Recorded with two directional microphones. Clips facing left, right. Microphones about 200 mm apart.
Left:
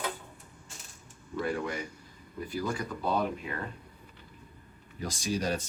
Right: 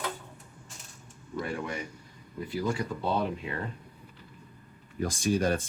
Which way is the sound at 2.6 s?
25° right (ahead or behind).